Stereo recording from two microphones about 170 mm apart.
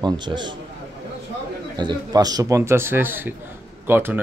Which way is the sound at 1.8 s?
25° right (ahead or behind).